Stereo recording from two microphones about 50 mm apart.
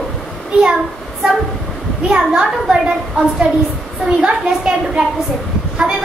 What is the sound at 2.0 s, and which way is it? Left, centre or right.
A child's voice, centre.